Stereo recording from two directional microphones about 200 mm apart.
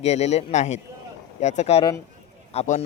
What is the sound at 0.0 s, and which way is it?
Speech, 35° left (ahead or behind).